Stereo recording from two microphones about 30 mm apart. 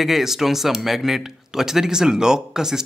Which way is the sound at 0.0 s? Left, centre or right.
Centre.